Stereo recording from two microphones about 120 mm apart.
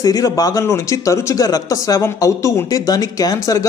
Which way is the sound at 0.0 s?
30° left (ahead or behind).